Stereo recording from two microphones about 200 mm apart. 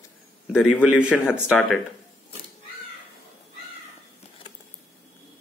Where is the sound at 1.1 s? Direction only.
10° left (ahead or behind).